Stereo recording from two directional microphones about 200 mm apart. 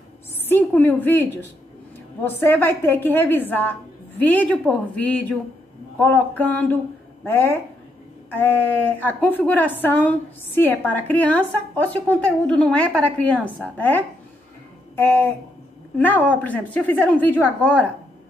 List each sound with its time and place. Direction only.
0.5 s a woman's voice: 10° left (ahead or behind)
8.3 s a woman's voice: 10° left (ahead or behind)